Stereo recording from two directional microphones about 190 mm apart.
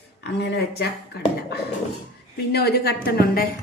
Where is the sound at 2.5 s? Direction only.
55° left (ahead or behind).